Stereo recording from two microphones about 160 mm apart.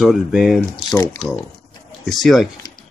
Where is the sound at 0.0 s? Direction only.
Centre (ahead or behind).